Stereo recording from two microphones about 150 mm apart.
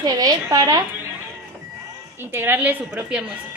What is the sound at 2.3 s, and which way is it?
Speech, 15° right (ahead or behind).